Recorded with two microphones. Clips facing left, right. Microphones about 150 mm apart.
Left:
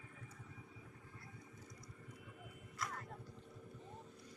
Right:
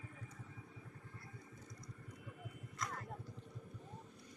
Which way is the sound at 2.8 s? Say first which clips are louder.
Right 1 dB; 5° left (ahead or behind).